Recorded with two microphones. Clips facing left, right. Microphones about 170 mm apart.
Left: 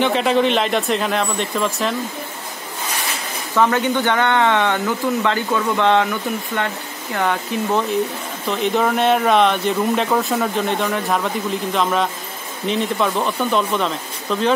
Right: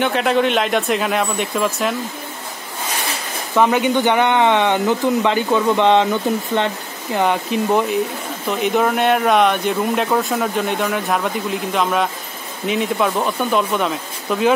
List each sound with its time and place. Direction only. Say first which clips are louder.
0.0 s speech: even; centre (ahead or behind)
3.5 s speech: right 2 dB; 15° right (ahead or behind)
8.5 s speech: right 1 dB; centre (ahead or behind)